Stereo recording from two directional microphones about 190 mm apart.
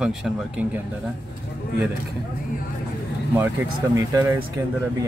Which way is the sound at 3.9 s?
15° right (ahead or behind).